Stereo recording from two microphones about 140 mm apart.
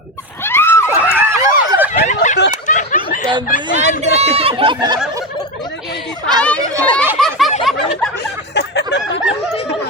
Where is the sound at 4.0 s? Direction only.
45° right (ahead or behind).